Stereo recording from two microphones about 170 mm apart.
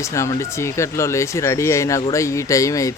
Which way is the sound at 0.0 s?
15° left (ahead or behind).